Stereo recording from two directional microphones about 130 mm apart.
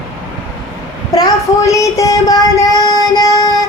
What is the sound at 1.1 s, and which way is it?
Child singing, 25° left (ahead or behind).